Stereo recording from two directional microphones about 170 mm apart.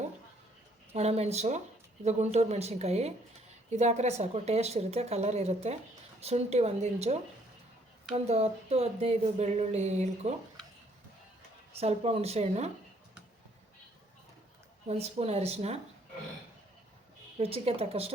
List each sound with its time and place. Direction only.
0.9 s speech: 40° right (ahead or behind)
11.8 s speech: 35° right (ahead or behind)
14.8 s speech: 40° right (ahead or behind)
17.3 s speech: 35° right (ahead or behind)